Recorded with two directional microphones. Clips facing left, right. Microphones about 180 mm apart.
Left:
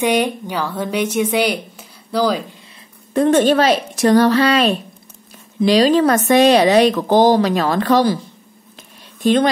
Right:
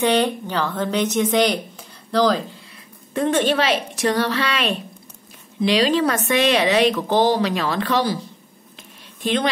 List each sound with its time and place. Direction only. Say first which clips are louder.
0.0 s a woman's voice: left 1 dB; 10° left (ahead or behind)
3.1 s a woman's voice: left 6 dB; 40° left (ahead or behind)
8.7 s a sound: left 2 dB; 45° left (ahead or behind)